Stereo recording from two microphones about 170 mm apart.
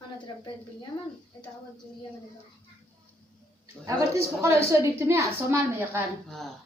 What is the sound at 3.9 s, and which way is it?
A woman's voice, 15° right (ahead or behind).